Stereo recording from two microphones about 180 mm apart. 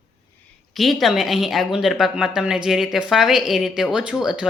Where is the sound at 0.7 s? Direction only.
Centre (ahead or behind).